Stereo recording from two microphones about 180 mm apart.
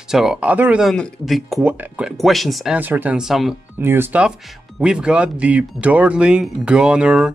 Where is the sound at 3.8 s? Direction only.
10° right (ahead or behind).